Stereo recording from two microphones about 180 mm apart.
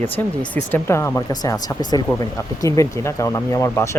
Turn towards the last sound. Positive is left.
turn(degrees=15)  # may be behind; listen again after turning